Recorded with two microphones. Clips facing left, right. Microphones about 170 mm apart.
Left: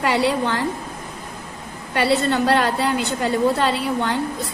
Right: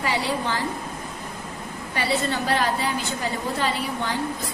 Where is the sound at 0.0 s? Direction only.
65° left (ahead or behind).